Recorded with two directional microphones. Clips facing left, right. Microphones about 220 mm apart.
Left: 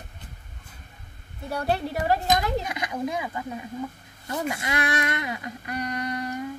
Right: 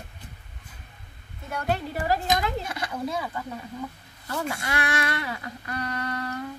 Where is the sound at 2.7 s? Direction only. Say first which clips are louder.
Left 1 dB; 15° left (ahead or behind).